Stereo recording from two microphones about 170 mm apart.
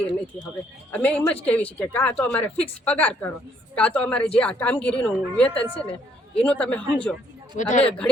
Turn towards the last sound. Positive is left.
turn(degrees=45)  # may be behind; listen again after turning